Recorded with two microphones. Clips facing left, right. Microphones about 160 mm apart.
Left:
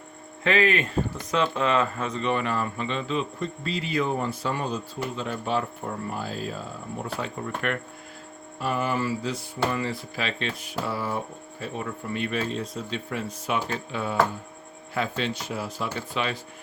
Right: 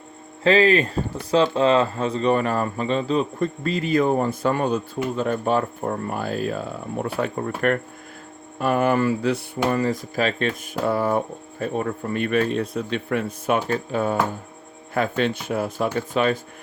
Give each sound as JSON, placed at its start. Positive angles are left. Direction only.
{"t": 0.4, "sound": "a man's voice", "side_deg": -30}
{"t": 8.5, "sound": "speech", "side_deg": -60}
{"t": 9.6, "sound": "a man's voice", "side_deg": -45}